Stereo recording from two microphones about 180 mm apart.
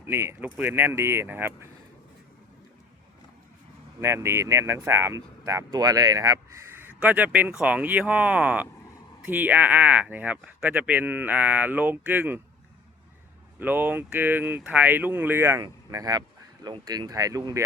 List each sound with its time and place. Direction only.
0.0 s speech: 15° right (ahead or behind)
4.0 s speech: 15° right (ahead or behind)
13.6 s speech: 10° right (ahead or behind)